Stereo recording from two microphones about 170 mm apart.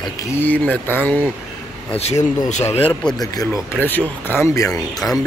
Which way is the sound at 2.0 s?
40° left (ahead or behind).